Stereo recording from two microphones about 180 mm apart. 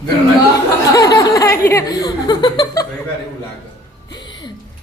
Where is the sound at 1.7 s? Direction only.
20° left (ahead or behind).